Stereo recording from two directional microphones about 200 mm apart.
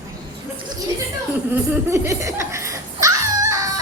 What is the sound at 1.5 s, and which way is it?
Laughter, 10° right (ahead or behind).